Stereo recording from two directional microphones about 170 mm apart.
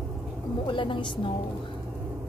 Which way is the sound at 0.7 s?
30° left (ahead or behind).